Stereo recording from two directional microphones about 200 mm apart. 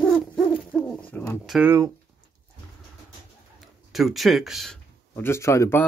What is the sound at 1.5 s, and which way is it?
Speech, 10° right (ahead or behind).